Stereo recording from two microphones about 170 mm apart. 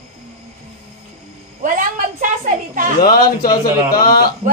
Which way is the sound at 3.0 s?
55° left (ahead or behind).